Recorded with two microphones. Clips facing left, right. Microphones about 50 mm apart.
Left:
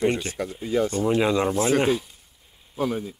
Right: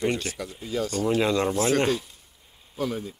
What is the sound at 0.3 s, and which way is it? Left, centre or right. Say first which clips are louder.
Speech: left 5 dB; left.